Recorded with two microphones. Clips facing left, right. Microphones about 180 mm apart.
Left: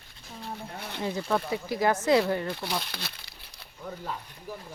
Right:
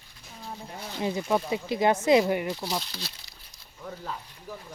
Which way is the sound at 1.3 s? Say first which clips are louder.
Right 1 dB; 15° right (ahead or behind).